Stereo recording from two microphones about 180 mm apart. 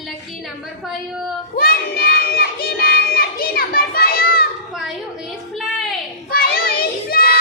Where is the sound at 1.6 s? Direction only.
55° left (ahead or behind).